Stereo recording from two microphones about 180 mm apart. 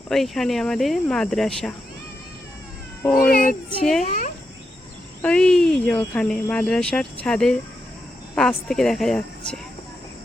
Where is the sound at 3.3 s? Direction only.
55° left (ahead or behind).